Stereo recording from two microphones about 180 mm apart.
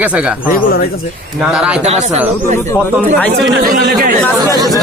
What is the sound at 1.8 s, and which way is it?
Speech, 40° right (ahead or behind).